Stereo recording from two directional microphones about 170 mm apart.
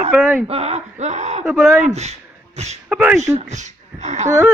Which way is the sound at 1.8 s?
40° right (ahead or behind).